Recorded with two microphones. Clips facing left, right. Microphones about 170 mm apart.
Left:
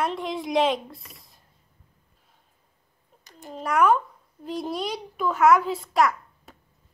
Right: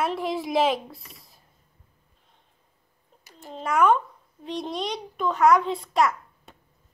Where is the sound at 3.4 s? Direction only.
Centre (ahead or behind).